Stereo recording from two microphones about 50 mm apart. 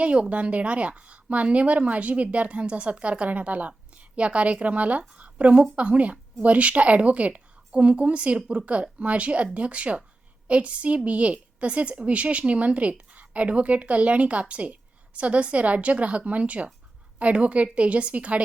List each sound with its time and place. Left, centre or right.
0.0 s a woman's voice: right